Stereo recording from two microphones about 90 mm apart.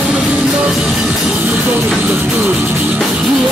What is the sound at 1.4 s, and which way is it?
Music, 20° right (ahead or behind).